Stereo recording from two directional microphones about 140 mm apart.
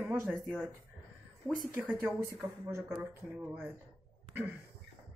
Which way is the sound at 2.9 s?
10° right (ahead or behind).